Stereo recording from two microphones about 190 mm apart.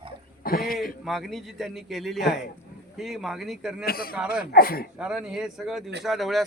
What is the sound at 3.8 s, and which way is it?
Speech, 50° left (ahead or behind).